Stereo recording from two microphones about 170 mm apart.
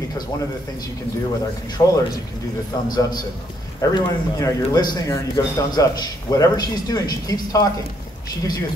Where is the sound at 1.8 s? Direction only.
25° left (ahead or behind).